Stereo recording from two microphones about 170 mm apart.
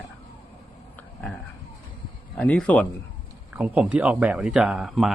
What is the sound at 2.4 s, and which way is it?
Speech, 10° left (ahead or behind).